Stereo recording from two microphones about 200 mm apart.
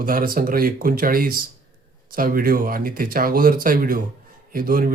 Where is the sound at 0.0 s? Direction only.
45° right (ahead or behind).